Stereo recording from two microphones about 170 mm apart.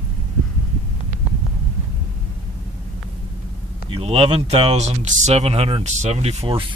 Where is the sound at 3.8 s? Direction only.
35° right (ahead or behind).